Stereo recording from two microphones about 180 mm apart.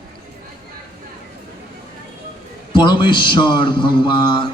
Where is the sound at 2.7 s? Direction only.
25° left (ahead or behind).